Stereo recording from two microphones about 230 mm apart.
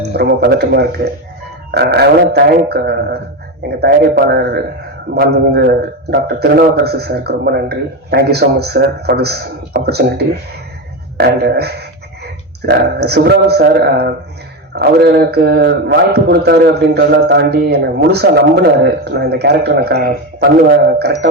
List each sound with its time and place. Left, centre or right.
0.1 s a man's voice: right
11.2 s a man's voice: right